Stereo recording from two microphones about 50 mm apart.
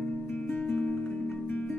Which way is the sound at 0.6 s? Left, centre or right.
Left.